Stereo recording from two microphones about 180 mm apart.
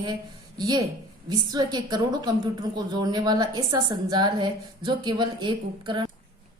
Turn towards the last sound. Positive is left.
turn(degrees=-25)  # may be behind; listen again after turning